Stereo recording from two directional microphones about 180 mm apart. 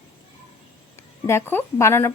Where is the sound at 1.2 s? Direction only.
15° left (ahead or behind).